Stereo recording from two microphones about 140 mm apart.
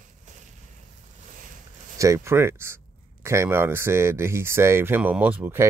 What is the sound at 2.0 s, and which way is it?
Speech, 20° right (ahead or behind).